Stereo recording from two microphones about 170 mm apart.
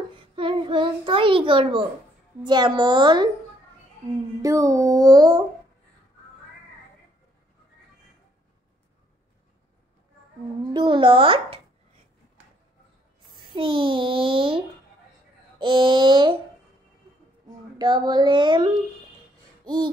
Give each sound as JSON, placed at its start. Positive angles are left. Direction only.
{"t": 0.1, "sound": "a child's voice", "side_deg": -30}
{"t": 4.4, "sound": "speech", "side_deg": -20}
{"t": 10.7, "sound": "speech", "side_deg": -25}
{"t": 13.3, "sound": "a child's voice", "side_deg": -30}
{"t": 15.6, "sound": "speech", "side_deg": -30}
{"t": 17.7, "sound": "speech", "side_deg": -25}
{"t": 19.6, "sound": "a sound", "side_deg": -25}